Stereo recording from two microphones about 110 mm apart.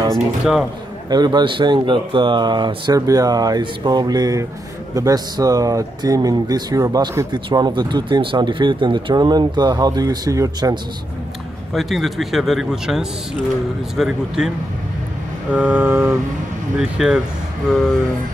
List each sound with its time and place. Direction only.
0.1 s speech: centre (ahead or behind)
1.1 s speech: 40° right (ahead or behind)
7.3 s speech: 45° right (ahead or behind)
11.7 s speech: centre (ahead or behind)
15.5 s vehicle: 15° right (ahead or behind)
16.7 s speech: 5° right (ahead or behind)